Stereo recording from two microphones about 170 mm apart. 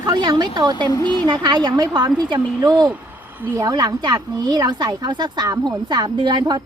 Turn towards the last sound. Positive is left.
turn(degrees=-25)  # may be behind; listen again after turning